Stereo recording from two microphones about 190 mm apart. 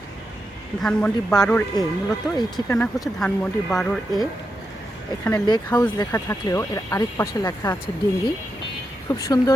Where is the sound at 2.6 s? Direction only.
20° left (ahead or behind).